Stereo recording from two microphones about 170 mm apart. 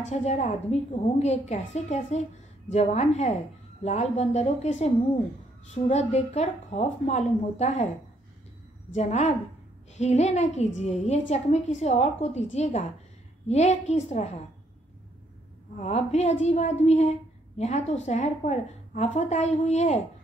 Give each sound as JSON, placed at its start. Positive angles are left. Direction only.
{"t": 0.0, "sound": "a woman's voice", "side_deg": 40}
{"t": 8.9, "sound": "a woman's voice", "side_deg": 40}
{"t": 15.7, "sound": "a woman's voice", "side_deg": 40}